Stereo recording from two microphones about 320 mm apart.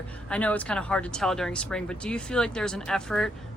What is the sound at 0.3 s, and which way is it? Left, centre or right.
Speech, centre.